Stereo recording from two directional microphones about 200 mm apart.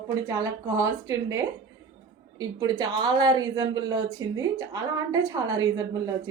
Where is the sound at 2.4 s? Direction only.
20° right (ahead or behind).